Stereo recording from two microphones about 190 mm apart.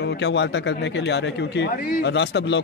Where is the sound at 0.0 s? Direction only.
65° left (ahead or behind).